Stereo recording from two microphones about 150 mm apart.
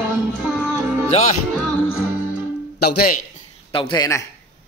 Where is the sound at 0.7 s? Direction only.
10° right (ahead or behind).